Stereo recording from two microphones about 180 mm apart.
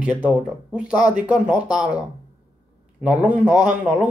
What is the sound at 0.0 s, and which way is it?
Speech, 5° right (ahead or behind).